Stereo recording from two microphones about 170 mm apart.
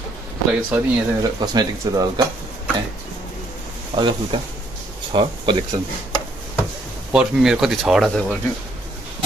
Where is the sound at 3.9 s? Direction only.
25° right (ahead or behind).